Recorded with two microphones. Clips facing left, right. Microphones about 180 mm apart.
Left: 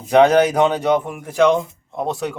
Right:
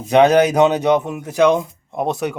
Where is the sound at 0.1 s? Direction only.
20° right (ahead or behind).